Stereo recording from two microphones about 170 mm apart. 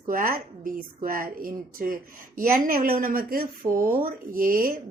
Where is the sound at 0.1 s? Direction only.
55° right (ahead or behind).